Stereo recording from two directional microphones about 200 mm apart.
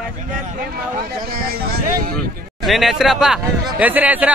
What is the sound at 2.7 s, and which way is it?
Speech, centre (ahead or behind).